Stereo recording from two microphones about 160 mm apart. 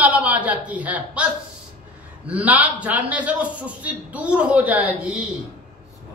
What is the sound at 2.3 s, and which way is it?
A woman's voice, 10° right (ahead or behind).